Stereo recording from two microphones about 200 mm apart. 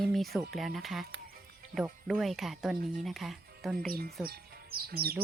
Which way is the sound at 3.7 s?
45° right (ahead or behind).